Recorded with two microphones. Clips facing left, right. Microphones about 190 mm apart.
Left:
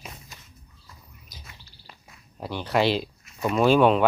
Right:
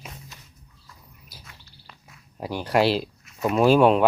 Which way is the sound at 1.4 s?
5° left (ahead or behind).